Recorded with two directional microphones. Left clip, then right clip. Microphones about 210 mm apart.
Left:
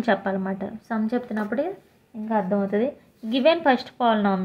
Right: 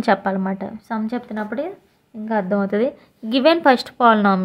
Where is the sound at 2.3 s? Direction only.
35° right (ahead or behind).